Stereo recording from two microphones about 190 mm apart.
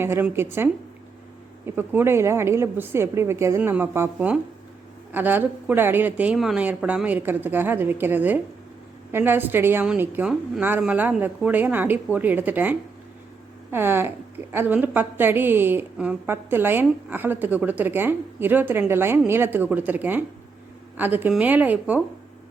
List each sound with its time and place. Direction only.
0.0 s a woman's voice: 10° right (ahead or behind)